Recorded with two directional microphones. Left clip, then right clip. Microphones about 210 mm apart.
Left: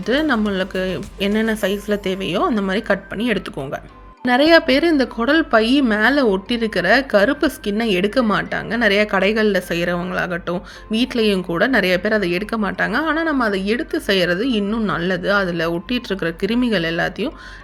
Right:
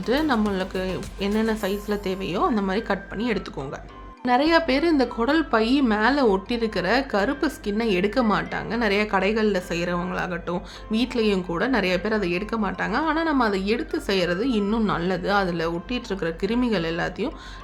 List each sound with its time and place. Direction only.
0.0 s speech: 15° left (ahead or behind)